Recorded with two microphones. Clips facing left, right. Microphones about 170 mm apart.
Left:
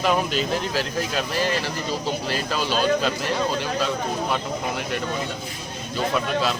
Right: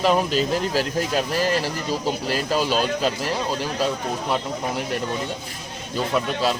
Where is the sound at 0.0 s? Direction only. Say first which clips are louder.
Right 2 dB; 35° right (ahead or behind).